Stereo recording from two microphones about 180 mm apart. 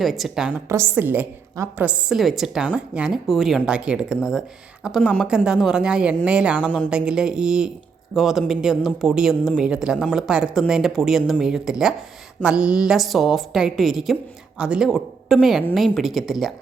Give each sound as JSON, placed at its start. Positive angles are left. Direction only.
{"t": 0.0, "sound": "a woman's voice", "side_deg": 0}
{"t": 6.7, "sound": "a woman's voice", "side_deg": 5}
{"t": 6.9, "sound": "a woman's voice", "side_deg": -5}